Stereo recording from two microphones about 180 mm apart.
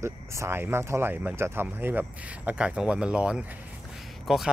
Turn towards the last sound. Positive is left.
turn(degrees=0)  # may be behind; listen again after turning